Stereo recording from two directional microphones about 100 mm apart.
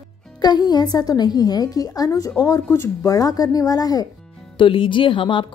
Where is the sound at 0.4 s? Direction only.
45° left (ahead or behind).